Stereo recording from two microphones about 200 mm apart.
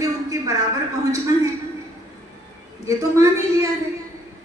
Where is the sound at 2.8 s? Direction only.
15° right (ahead or behind).